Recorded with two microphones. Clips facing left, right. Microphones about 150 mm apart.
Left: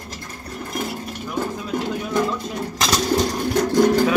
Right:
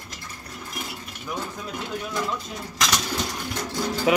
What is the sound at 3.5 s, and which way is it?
Speech, 55° left (ahead or behind).